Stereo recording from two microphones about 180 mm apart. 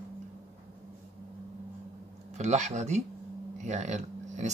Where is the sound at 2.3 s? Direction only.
40° right (ahead or behind).